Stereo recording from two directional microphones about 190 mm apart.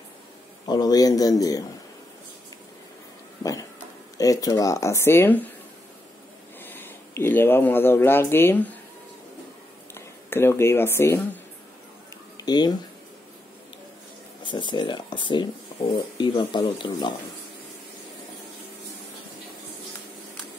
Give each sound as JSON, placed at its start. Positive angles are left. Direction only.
{"t": 0.7, "sound": "speech", "side_deg": 20}
{"t": 4.2, "sound": "speech", "side_deg": 20}
{"t": 6.6, "sound": "speech", "side_deg": 10}
{"t": 9.9, "sound": "speech", "side_deg": 15}
{"t": 12.4, "sound": "speech", "side_deg": 20}
{"t": 14.4, "sound": "speech", "side_deg": 25}